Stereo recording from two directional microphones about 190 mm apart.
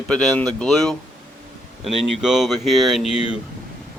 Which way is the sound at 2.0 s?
Centre (ahead or behind).